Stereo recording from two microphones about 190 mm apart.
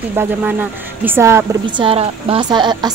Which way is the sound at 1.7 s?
30° right (ahead or behind).